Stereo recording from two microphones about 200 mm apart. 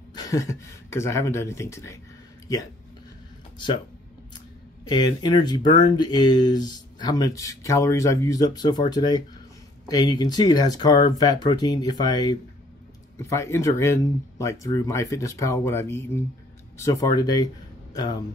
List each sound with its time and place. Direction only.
0.1 s speech: 20° left (ahead or behind)
3.5 s speech: 25° left (ahead or behind)
4.8 s speech: 20° left (ahead or behind)